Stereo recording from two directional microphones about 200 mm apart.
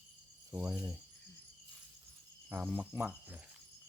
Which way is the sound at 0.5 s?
5° right (ahead or behind).